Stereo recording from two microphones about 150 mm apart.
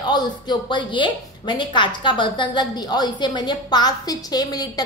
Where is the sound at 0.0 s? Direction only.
30° left (ahead or behind).